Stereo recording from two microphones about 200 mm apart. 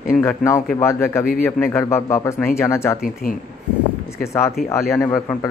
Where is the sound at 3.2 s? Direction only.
45° left (ahead or behind).